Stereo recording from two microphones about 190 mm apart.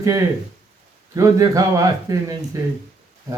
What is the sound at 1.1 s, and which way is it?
A man's voice, 15° right (ahead or behind).